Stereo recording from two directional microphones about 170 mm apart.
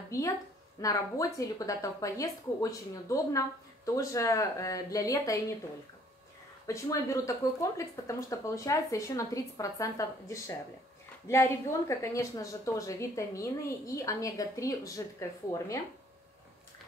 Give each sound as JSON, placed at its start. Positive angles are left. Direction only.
{"t": 0.7, "sound": "speech", "side_deg": 20}
{"t": 6.7, "sound": "speech", "side_deg": 20}